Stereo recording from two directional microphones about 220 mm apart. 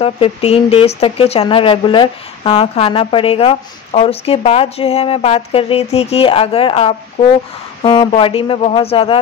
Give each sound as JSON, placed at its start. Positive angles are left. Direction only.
{"t": 0.0, "sound": "speech", "side_deg": 25}